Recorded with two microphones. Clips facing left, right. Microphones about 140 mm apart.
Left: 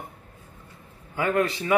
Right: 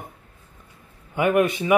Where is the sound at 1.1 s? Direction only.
20° right (ahead or behind).